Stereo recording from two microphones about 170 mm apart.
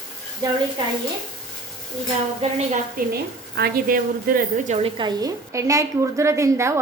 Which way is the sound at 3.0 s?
65° right (ahead or behind).